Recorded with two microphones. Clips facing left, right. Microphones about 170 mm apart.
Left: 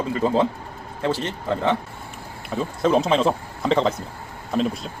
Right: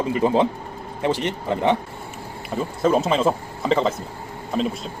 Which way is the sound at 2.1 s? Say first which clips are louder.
Right 1 dB; centre (ahead or behind).